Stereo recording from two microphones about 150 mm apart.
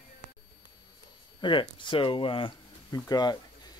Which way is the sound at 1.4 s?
30° left (ahead or behind).